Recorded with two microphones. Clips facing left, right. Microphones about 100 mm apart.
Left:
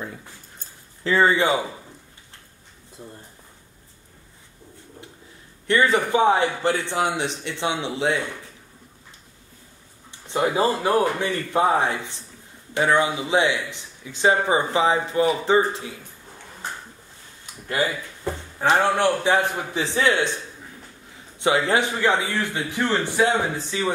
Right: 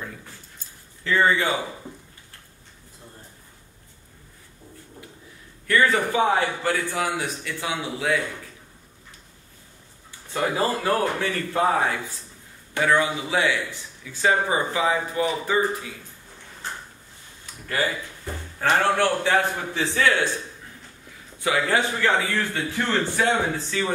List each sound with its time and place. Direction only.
1.0 s speech: 25° left (ahead or behind)
5.7 s speech: 20° left (ahead or behind)
10.2 s speech: 20° left (ahead or behind)
18.6 s a man's voice: 15° left (ahead or behind)
21.4 s speech: 25° left (ahead or behind)